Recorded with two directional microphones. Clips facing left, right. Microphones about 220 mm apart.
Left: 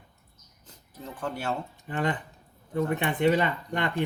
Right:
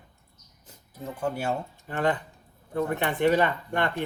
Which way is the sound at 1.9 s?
15° left (ahead or behind).